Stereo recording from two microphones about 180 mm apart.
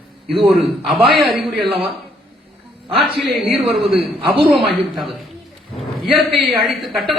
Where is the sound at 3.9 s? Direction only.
30° right (ahead or behind).